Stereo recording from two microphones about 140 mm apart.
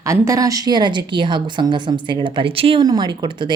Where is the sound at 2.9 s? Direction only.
30° right (ahead or behind).